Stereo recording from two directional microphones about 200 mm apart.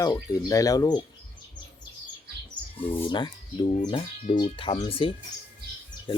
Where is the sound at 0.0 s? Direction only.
20° left (ahead or behind).